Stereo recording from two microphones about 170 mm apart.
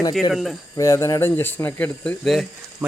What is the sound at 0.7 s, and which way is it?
Speech, 20° left (ahead or behind).